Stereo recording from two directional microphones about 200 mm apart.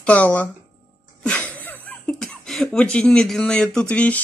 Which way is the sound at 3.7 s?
5° left (ahead or behind).